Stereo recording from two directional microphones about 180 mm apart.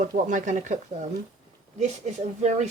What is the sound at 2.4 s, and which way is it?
Dishes, 40° right (ahead or behind).